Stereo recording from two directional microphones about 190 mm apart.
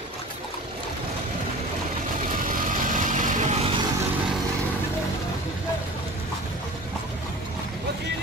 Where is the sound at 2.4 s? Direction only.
45° right (ahead or behind).